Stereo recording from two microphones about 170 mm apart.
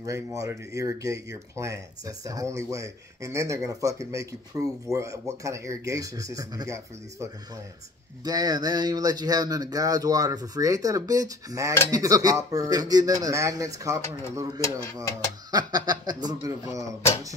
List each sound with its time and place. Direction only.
0.0 s speech: 20° right (ahead or behind)